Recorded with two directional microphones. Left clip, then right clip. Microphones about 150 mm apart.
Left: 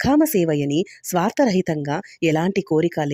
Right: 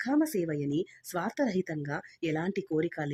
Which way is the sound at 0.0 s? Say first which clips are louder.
Left 11 dB; 50° left (ahead or behind).